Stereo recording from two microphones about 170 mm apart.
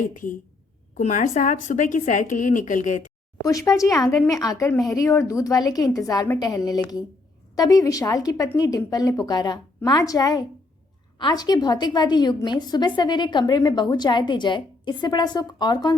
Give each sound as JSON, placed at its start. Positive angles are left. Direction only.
{"t": 0.0, "sound": "a woman's voice", "side_deg": 50}
{"t": 3.4, "sound": "a woman's voice", "side_deg": 20}